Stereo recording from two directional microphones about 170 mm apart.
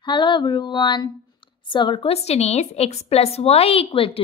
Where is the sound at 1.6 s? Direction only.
30° left (ahead or behind).